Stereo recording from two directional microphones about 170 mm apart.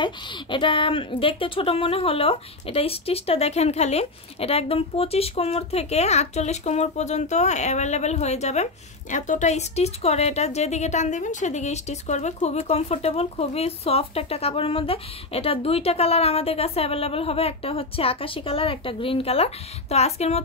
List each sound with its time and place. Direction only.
0.0 s a woman's voice: 30° left (ahead or behind)